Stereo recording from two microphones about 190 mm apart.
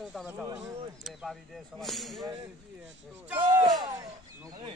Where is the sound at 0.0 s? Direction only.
Centre (ahead or behind).